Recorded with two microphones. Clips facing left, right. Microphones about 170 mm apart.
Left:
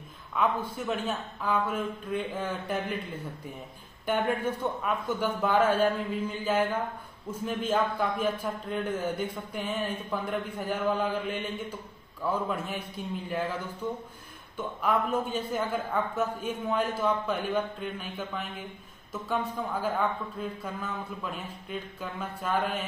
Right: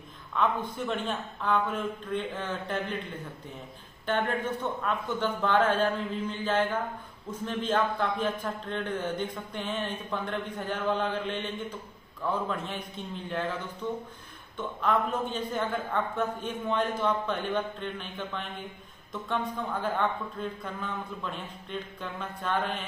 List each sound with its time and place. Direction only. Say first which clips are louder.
0.3 s a man's voice: even; 10° left (ahead or behind)
4.0 s a man's voice: left 1 dB; 10° left (ahead or behind)